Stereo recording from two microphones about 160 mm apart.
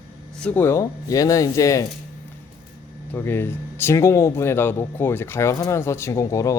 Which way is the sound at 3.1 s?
15° left (ahead or behind).